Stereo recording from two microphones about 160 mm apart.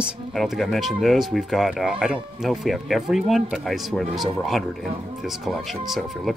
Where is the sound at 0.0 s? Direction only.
Centre (ahead or behind).